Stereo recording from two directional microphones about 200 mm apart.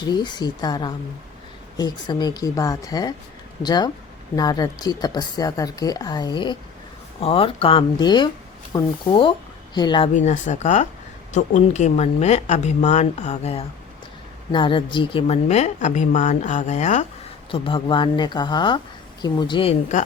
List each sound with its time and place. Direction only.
0.0 s speech: 20° left (ahead or behind)
10.2 s a woman's voice: 35° left (ahead or behind)
17.5 s speech: 25° left (ahead or behind)